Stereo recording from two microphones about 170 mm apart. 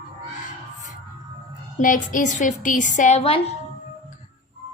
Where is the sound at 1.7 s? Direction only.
50° left (ahead or behind); by 3.5 s 35° left (ahead or behind).